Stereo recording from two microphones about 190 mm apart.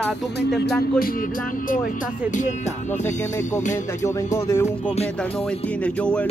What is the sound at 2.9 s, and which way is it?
Speech, 40° left (ahead or behind).